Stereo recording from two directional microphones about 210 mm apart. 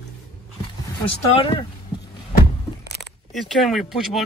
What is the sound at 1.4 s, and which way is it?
Speech, 25° left (ahead or behind).